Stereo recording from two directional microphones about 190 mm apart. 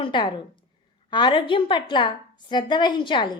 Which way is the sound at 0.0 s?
25° left (ahead or behind).